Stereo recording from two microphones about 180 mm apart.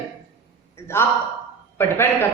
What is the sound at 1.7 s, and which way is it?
Speech, 15° left (ahead or behind).